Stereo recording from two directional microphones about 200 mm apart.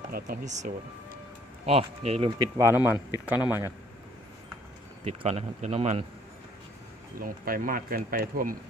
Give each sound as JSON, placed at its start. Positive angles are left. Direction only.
{"t": 0.1, "sound": "speech", "side_deg": -40}
{"t": 1.7, "sound": "speech", "side_deg": -30}
{"t": 2.5, "sound": "speech", "side_deg": -10}
{"t": 5.0, "sound": "speech", "side_deg": -30}
{"t": 7.2, "sound": "speech", "side_deg": -45}